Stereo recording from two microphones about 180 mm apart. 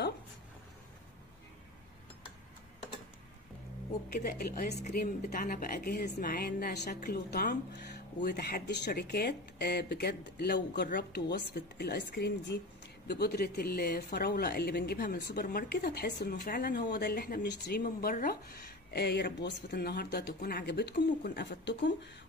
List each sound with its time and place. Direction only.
4.1 s a woman's voice: 55° left (ahead or behind)
17.8 s a woman's voice: 50° left (ahead or behind); by 21.9 s 75° left (ahead or behind)